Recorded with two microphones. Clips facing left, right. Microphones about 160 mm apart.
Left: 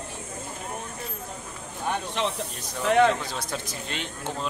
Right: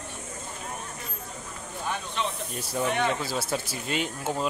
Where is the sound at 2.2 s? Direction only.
90° left.